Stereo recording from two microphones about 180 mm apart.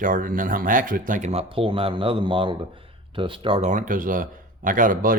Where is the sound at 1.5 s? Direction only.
30° right (ahead or behind).